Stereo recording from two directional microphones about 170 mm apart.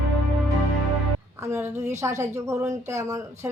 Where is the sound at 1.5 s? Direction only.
15° right (ahead or behind).